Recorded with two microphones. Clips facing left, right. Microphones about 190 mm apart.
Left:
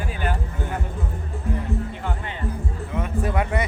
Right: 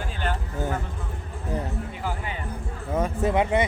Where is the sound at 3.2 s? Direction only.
20° right (ahead or behind).